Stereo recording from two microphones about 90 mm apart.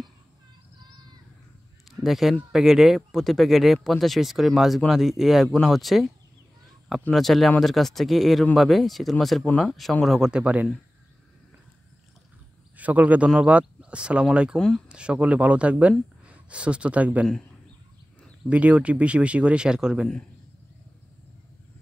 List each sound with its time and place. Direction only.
1.9 s honk: centre (ahead or behind)
2.5 s speech: 5° right (ahead or behind)
12.7 s a man's voice: 15° right (ahead or behind)
18.5 s speech: 15° right (ahead or behind)